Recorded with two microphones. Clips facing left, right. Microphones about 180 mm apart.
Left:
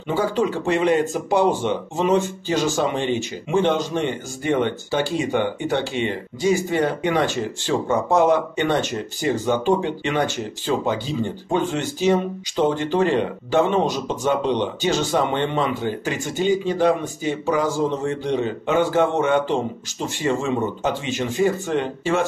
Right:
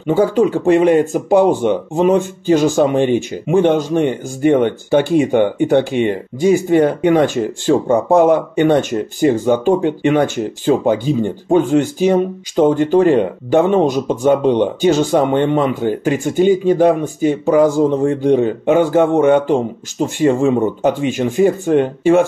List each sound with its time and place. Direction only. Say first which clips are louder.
0.0 s speech: right 8 dB; 50° right (ahead or behind)